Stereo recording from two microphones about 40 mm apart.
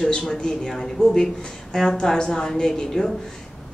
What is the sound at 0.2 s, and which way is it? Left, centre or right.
Speech, centre.